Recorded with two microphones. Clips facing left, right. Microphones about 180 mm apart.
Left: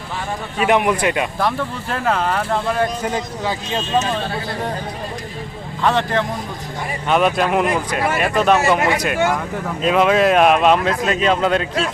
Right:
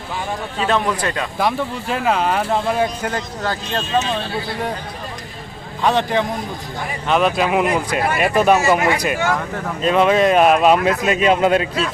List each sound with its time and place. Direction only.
0.6 s speech: 15° left (ahead or behind)
1.4 s speech: 15° right (ahead or behind)
3.0 s speech: centre (ahead or behind)
5.8 s speech: 15° right (ahead or behind)
7.1 s speech: centre (ahead or behind)